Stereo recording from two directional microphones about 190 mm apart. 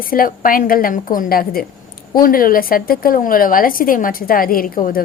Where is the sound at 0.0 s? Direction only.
50° left (ahead or behind).